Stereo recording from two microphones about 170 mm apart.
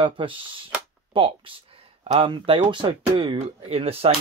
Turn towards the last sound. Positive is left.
turn(degrees=-35)  # may be behind; listen again after turning